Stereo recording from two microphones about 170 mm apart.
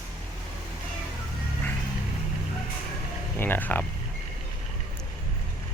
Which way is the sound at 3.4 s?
10° left (ahead or behind).